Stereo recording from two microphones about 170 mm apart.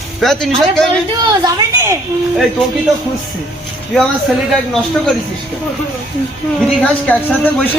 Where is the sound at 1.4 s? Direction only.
20° right (ahead or behind).